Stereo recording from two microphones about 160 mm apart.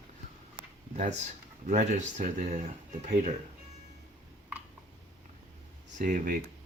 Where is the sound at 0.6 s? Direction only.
25° left (ahead or behind).